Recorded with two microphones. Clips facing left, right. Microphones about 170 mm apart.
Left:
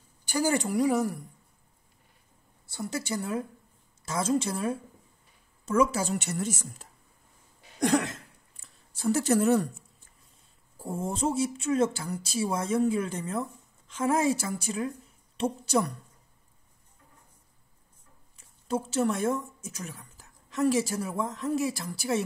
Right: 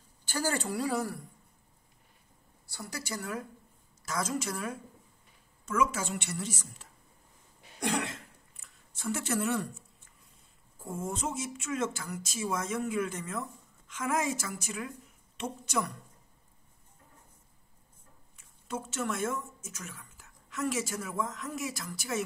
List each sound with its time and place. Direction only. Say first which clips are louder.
0.2 s speech: left 6 dB; 15° left (ahead or behind)
2.7 s a woman's voice: left 7 dB; 25° left (ahead or behind); by 6.9 s 45° left (ahead or behind)
7.8 s a sound: left 7 dB; 40° left (ahead or behind)
10.8 s speech: left 5 dB; 35° left (ahead or behind)
18.7 s speech: left 7 dB; 35° left (ahead or behind)